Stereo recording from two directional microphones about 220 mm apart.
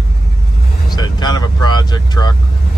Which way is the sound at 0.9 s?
20° left (ahead or behind).